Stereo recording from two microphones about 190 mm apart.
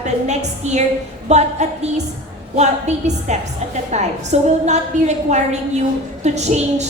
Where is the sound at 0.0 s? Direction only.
35° right (ahead or behind).